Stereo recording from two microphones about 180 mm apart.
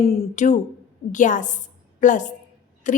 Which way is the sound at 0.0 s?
40° left (ahead or behind).